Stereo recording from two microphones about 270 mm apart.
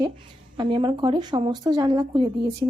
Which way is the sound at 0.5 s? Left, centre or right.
Centre.